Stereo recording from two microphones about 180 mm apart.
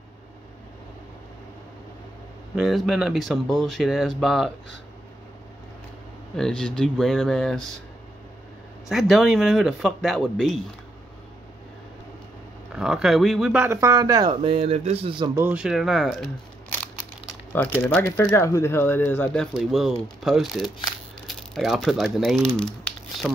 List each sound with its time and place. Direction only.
2.5 s speech: centre (ahead or behind)
6.3 s speech: 5° left (ahead or behind)
8.8 s speech: centre (ahead or behind)
12.7 s speech: 5° right (ahead or behind); by 14.3 s 20° right (ahead or behind)
14.4 s speech: 35° right (ahead or behind)
15.2 s speech: 15° right (ahead or behind); by 16.3 s centre (ahead or behind)
17.8 s speech: 15° left (ahead or behind)